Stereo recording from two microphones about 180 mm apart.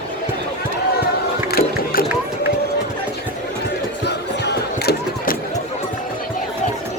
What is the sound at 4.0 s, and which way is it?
Music, 65° left (ahead or behind).